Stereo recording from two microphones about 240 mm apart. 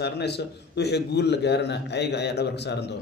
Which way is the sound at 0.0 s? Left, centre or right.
Left.